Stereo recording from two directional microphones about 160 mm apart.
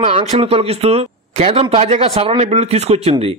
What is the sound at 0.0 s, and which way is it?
A man's voice, 40° right (ahead or behind).